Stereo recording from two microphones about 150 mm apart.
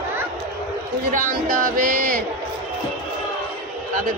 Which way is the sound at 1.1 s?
65° right (ahead or behind).